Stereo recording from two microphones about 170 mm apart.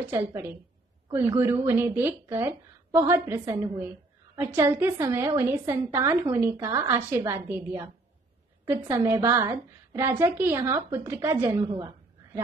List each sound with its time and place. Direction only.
0.0 s a woman's voice: 15° right (ahead or behind)